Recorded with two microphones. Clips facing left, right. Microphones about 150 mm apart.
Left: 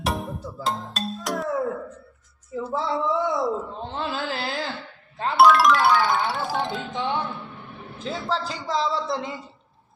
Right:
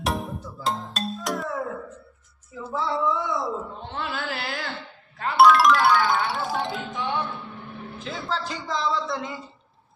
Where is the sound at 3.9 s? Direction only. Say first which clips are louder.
Left 2 dB; 25° left (ahead or behind).